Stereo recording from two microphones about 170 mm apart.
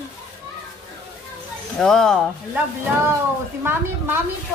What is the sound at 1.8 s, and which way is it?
Speech, 5° left (ahead or behind).